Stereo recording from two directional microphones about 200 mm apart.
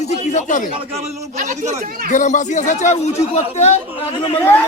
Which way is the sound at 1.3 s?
35° right (ahead or behind).